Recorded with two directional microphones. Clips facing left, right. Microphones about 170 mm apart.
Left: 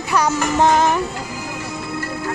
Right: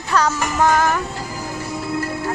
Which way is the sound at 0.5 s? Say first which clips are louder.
Left 2 dB; 25° left (ahead or behind).